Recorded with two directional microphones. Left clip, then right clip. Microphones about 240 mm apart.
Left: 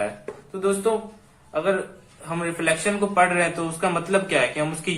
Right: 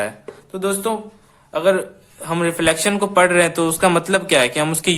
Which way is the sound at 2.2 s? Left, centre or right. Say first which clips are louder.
Right 6 dB; right.